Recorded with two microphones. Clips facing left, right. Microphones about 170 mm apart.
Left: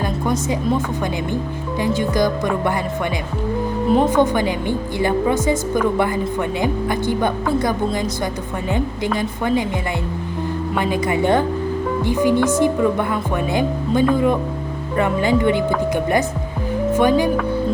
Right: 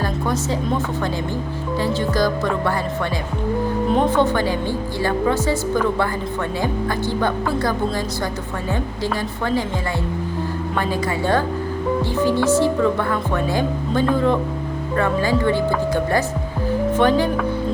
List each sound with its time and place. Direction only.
2.0 s speech: 15° left (ahead or behind)
3.8 s speech: 5° left (ahead or behind)
10.8 s a woman's voice: 15° left (ahead or behind)
16.9 s speech: 10° left (ahead or behind)